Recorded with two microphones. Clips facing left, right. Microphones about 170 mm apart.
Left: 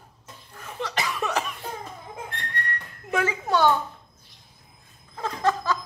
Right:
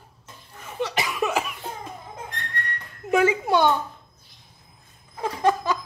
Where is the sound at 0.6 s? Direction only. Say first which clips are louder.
Right 2 dB; 5° right (ahead or behind).